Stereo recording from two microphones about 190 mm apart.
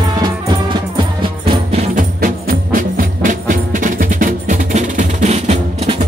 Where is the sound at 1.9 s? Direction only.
45° right (ahead or behind).